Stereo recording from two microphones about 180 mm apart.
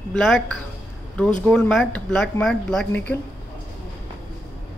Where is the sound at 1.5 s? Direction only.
Centre (ahead or behind).